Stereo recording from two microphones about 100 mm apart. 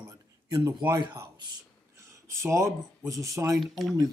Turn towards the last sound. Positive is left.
turn(degrees=0)  # may be behind; listen again after turning